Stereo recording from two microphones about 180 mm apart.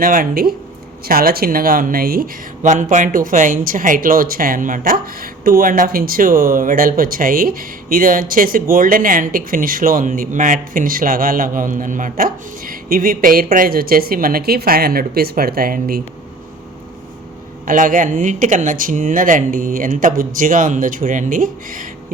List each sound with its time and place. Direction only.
0.0 s speech: 50° right (ahead or behind)
17.7 s speech: 50° right (ahead or behind)